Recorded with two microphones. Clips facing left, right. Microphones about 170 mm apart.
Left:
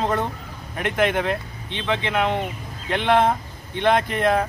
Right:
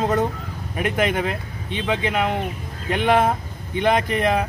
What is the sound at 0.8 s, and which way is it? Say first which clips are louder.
Speech: even; 10° right (ahead or behind).